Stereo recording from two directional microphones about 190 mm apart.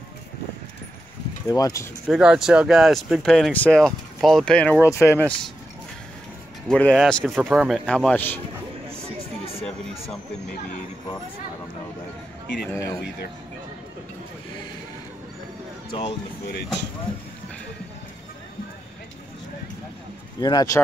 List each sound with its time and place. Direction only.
1.5 s speech: 20° left (ahead or behind)
2.0 s speech: 5° right (ahead or behind)
6.7 s speech: 5° left (ahead or behind)
9.5 s a sound: 30° left (ahead or behind)
12.7 s speech: 15° left (ahead or behind)
15.9 s speech: 30° left (ahead or behind)
20.3 s speech: 20° left (ahead or behind)